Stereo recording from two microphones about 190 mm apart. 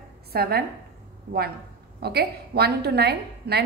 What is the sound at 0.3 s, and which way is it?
Speech, 55° right (ahead or behind).